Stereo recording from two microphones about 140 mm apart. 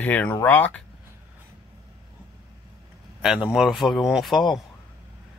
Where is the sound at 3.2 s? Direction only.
5° right (ahead or behind).